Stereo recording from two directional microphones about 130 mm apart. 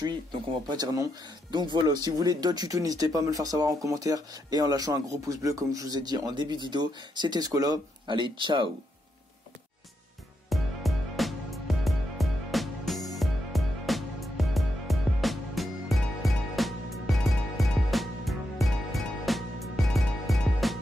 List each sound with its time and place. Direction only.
0.7 s speech: 30° right (ahead or behind)
10.5 s music: centre (ahead or behind)